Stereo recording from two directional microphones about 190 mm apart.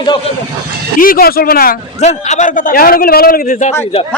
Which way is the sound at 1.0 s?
50° left (ahead or behind).